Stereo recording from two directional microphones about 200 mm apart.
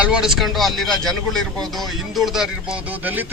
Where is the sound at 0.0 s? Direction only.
5° right (ahead or behind).